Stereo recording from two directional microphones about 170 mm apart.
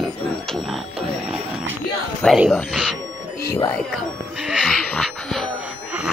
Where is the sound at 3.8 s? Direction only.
Centre (ahead or behind).